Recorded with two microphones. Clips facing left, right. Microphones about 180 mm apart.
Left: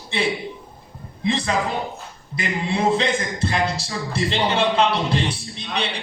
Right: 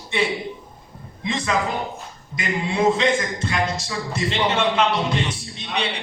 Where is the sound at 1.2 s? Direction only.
35° left (ahead or behind).